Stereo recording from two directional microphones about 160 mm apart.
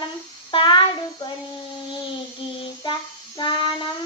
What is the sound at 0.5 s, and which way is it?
Child singing, 30° left (ahead or behind).